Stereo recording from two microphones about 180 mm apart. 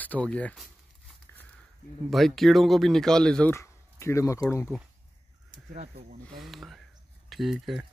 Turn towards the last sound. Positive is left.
turn(degrees=0)  # may be behind; listen again after turning